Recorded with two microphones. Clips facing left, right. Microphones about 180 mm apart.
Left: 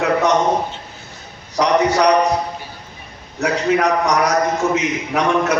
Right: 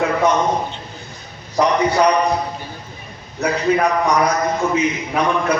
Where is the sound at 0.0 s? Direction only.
80° left.